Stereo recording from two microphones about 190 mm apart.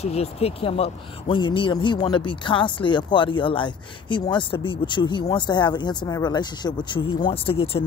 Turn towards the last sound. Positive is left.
turn(degrees=30)  # may be behind; listen again after turning